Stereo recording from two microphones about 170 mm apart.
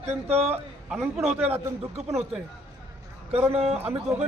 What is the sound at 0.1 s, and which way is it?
Speech, 40° right (ahead or behind).